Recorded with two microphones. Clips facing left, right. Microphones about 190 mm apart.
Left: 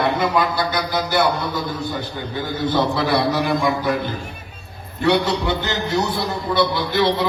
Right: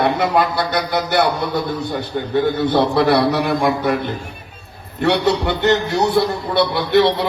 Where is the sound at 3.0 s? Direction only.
65° right (ahead or behind).